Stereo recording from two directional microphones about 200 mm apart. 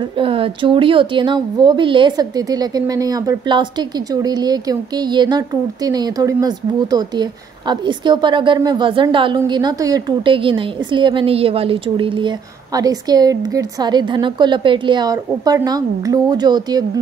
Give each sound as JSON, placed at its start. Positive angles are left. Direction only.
{"t": 0.2, "sound": "speech", "side_deg": -25}